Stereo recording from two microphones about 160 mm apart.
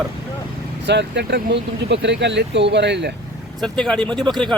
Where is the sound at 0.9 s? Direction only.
90° right.